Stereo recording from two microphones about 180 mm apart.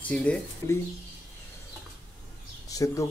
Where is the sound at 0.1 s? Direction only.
5° left (ahead or behind).